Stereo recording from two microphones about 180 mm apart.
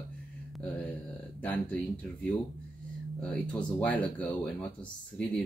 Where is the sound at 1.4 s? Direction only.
10° left (ahead or behind).